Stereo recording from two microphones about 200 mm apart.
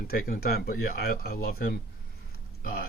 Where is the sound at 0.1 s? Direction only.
50° left (ahead or behind).